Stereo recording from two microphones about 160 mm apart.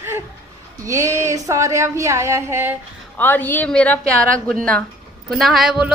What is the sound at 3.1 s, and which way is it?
A woman's voice, 10° left (ahead or behind).